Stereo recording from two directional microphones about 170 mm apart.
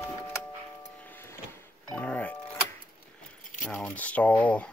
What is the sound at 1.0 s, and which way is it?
Vehicle, 10° left (ahead or behind).